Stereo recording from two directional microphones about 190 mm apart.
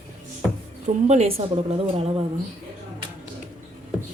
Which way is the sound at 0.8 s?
35° right (ahead or behind).